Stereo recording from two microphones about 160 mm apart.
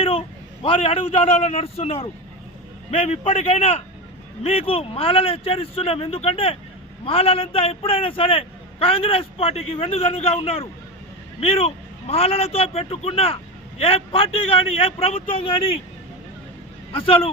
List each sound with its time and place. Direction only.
0.0 s speech: 35° left (ahead or behind)
16.9 s speech: 35° left (ahead or behind)